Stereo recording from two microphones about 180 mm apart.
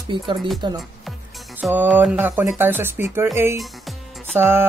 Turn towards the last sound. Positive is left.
turn(degrees=-15)  # may be behind; listen again after turning